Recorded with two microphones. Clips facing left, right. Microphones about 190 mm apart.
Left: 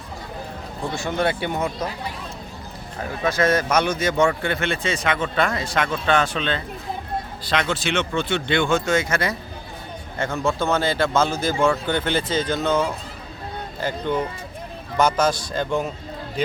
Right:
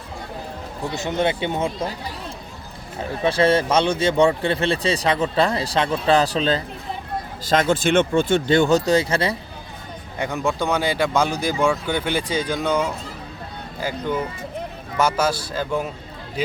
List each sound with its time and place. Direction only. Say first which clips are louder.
0.9 s speech: right 1 dB; 20° right (ahead or behind)
3.2 s speech: right 3 dB; 30° right (ahead or behind)
7.5 s speech: right 6 dB; 45° right (ahead or behind); by 9.3 s 30° right (ahead or behind)
10.2 s speech: even; 15° right (ahead or behind)
13.8 s speech: even; 10° right (ahead or behind)